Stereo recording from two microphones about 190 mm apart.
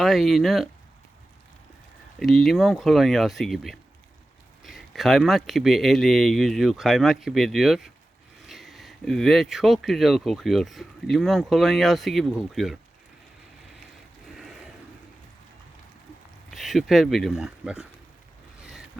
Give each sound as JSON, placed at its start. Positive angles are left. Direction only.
{"t": 0.0, "sound": "speech", "side_deg": 0}
{"t": 2.1, "sound": "speech", "side_deg": 0}
{"t": 14.3, "sound": "a sound", "side_deg": 0}
{"t": 16.5, "sound": "speech", "side_deg": 0}